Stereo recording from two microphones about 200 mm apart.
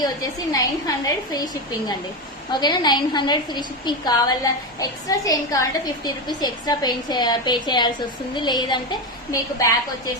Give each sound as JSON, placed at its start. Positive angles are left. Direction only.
{"t": 0.5, "sound": "a woman's voice", "side_deg": 20}
{"t": 2.5, "sound": "a woman's voice", "side_deg": 20}